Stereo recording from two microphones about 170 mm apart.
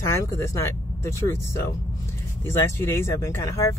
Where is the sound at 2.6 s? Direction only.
15° left (ahead or behind).